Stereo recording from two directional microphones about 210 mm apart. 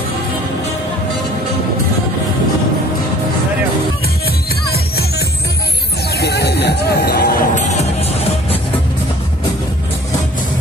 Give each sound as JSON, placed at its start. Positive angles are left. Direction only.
{"t": 6.1, "sound": "music", "side_deg": 50}